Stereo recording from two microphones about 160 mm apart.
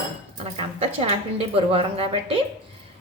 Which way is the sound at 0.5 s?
40° right (ahead or behind).